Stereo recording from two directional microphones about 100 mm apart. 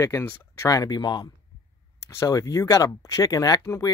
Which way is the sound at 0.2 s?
20° left (ahead or behind).